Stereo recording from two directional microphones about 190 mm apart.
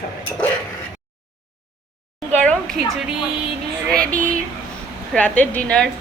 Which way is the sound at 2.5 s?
5° left (ahead or behind).